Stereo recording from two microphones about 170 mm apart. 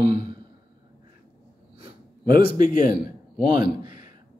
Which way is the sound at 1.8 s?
30° right (ahead or behind).